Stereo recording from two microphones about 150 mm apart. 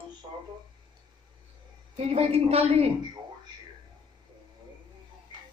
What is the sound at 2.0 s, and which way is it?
Speech, 45° right (ahead or behind).